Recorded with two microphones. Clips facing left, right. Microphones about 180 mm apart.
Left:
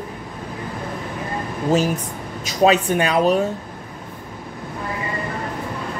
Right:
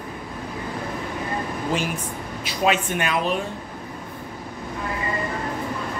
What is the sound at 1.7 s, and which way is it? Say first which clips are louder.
Speech: left 9 dB; 40° left (ahead or behind).